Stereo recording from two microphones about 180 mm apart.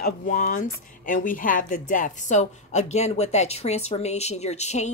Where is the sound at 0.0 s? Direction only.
50° left (ahead or behind).